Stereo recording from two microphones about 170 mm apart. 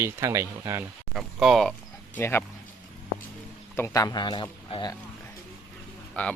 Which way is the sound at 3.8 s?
20° left (ahead or behind).